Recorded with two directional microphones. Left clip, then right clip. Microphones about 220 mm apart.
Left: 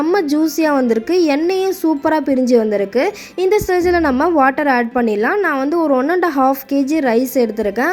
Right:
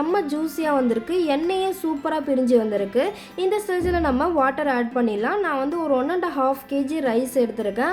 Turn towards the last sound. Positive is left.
turn(degrees=30)  # may be behind; listen again after turning